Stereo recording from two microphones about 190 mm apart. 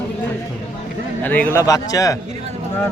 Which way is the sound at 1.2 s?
10° left (ahead or behind).